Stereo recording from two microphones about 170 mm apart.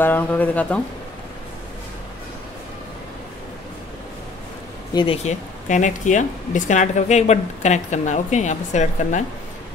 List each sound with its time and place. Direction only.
0.0 s speech: 10° left (ahead or behind)
4.9 s speech: 35° left (ahead or behind)